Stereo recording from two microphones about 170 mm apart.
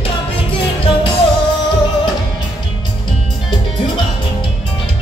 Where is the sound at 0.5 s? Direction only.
30° left (ahead or behind).